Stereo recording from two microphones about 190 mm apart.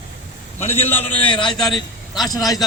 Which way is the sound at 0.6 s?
35° left (ahead or behind).